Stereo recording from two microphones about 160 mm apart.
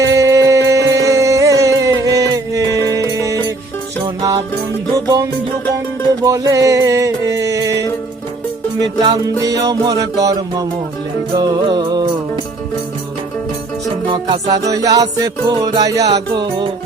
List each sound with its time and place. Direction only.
0.0 s music: 20° right (ahead or behind)
9.0 s music: 25° right (ahead or behind)
14.1 s music: 25° right (ahead or behind)